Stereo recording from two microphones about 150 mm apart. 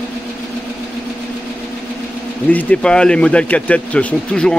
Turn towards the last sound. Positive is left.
turn(degrees=5)  # may be behind; listen again after turning